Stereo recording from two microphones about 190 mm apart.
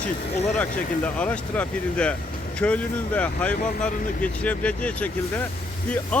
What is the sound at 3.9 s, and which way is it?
Speech, 45° left (ahead or behind).